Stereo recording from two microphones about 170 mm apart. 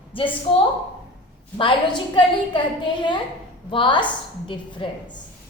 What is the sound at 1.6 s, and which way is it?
A woman's voice, 30° left (ahead or behind).